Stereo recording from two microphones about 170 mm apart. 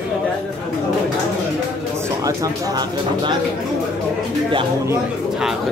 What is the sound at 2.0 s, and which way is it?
Speech, 20° right (ahead or behind).